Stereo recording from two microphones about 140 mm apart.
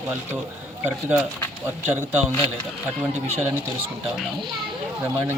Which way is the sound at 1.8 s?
15° right (ahead or behind).